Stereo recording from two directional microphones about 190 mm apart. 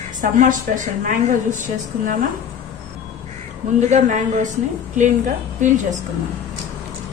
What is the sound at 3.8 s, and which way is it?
A woman's voice, 40° right (ahead or behind).